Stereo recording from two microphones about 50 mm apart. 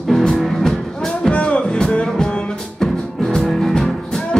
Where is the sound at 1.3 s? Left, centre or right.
Left.